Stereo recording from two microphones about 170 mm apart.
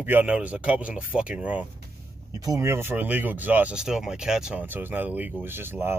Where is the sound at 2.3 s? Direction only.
20° right (ahead or behind).